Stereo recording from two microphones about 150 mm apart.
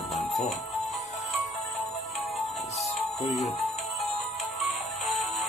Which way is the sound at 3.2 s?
45° left (ahead or behind).